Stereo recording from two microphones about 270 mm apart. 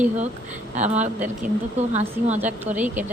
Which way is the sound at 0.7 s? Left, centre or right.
Right.